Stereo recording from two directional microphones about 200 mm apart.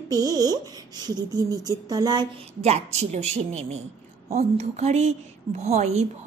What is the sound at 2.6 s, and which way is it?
Speech, 35° right (ahead or behind).